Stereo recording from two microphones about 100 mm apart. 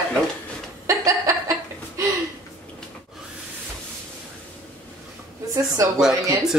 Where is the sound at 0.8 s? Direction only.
35° right (ahead or behind).